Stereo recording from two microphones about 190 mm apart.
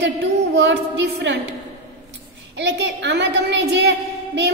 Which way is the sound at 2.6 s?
65° right (ahead or behind).